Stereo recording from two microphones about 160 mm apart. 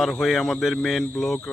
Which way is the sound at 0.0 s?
Centre (ahead or behind).